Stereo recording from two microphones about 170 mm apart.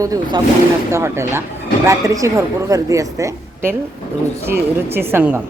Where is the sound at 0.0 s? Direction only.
20° right (ahead or behind).